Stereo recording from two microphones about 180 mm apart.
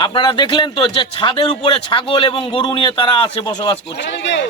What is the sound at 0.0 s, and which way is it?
A man's voice, 25° left (ahead or behind).